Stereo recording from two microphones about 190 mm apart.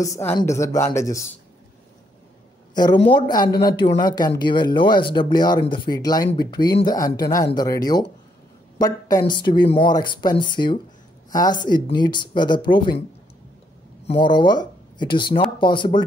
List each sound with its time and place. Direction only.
0.0 s speech: 15° left (ahead or behind)
2.7 s a woman's voice: 20° left (ahead or behind)
11.9 s speech: 25° left (ahead or behind)
14.0 s speech: 25° left (ahead or behind)